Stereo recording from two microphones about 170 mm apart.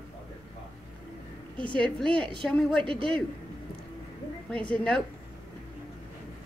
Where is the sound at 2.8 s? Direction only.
30° right (ahead or behind).